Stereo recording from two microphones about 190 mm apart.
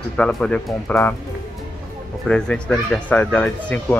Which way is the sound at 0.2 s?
5° left (ahead or behind).